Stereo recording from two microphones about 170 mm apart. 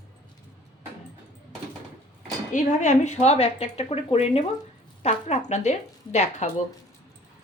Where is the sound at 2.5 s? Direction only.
45° left (ahead or behind).